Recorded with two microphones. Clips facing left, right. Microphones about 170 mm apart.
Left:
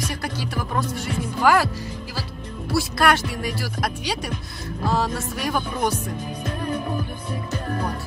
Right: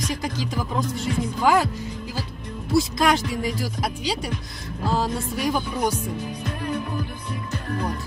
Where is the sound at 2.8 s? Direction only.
70° left (ahead or behind).